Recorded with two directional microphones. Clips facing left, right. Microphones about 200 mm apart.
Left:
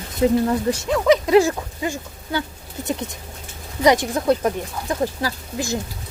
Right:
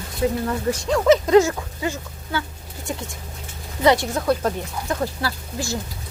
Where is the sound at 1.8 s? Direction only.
15° left (ahead or behind).